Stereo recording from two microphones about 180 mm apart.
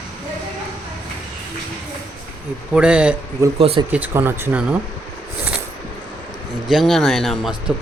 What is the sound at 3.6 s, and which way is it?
Speech, 30° right (ahead or behind).